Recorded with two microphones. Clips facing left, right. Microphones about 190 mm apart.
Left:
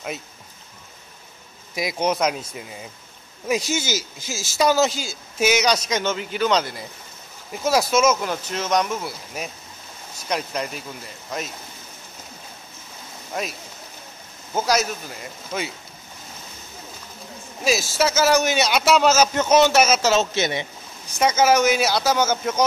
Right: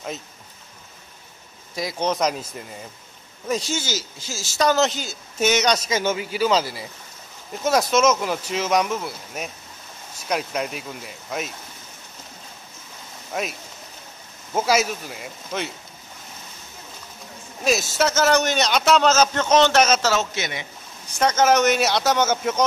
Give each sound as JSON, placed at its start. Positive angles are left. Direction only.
{"t": 1.8, "sound": "a man's voice", "side_deg": 10}
{"t": 13.3, "sound": "speech", "side_deg": -5}
{"t": 17.6, "sound": "a man's voice", "side_deg": 5}
{"t": 20.1, "sound": "a man's voice", "side_deg": 25}
{"t": 21.2, "sound": "speech", "side_deg": 5}